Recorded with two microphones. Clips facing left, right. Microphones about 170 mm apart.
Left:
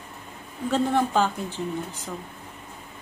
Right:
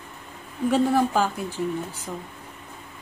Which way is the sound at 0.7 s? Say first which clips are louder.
Right 1 dB; 5° right (ahead or behind).